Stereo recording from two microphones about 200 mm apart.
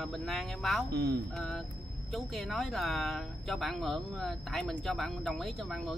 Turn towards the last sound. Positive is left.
turn(degrees=0)  # may be behind; listen again after turning